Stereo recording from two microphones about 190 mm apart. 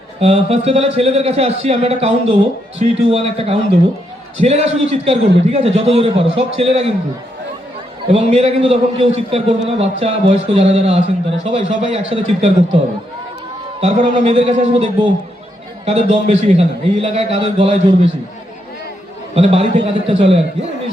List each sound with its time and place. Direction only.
0.2 s a man's voice: 35° right (ahead or behind)
8.0 s a man's voice: 30° right (ahead or behind)
13.8 s a man's voice: 35° right (ahead or behind)
15.9 s a man's voice: 30° right (ahead or behind)
19.3 s a man's voice: 30° right (ahead or behind)